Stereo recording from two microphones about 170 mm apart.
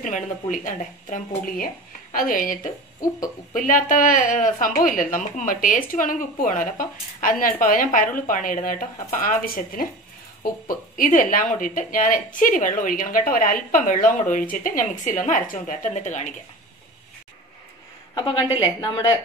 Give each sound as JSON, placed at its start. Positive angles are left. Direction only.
{"t": 0.0, "sound": "speech", "side_deg": 50}
{"t": 18.6, "sound": "speech", "side_deg": 25}